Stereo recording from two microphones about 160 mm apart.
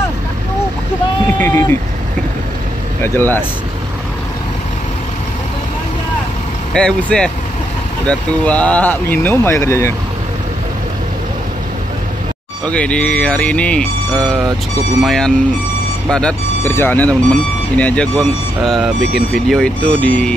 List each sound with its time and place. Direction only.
1.4 s speech: 15° left (ahead or behind)
3.0 s speech: 15° left (ahead or behind)
6.7 s speech: 5° left (ahead or behind)
12.6 s speech: 5° left (ahead or behind)
15.0 s speech: 5° left (ahead or behind)